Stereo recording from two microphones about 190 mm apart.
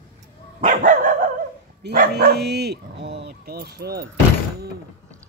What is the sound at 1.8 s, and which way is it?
Speech, 55° right (ahead or behind).